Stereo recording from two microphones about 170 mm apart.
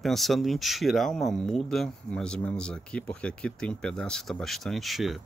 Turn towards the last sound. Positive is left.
turn(degrees=0)  # may be behind; listen again after turning